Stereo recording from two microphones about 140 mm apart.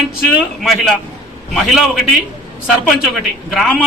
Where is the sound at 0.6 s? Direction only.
Centre (ahead or behind).